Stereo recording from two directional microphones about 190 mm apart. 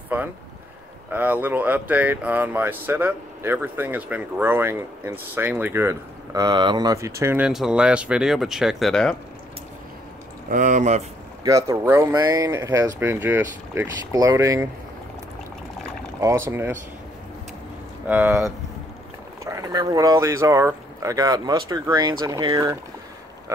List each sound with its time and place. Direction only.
1.1 s speech: 10° right (ahead or behind)
10.5 s speech: 40° right (ahead or behind)
11.4 s speech: 15° right (ahead or behind)
16.2 s speech: 15° right (ahead or behind)
18.0 s speech: 10° right (ahead or behind)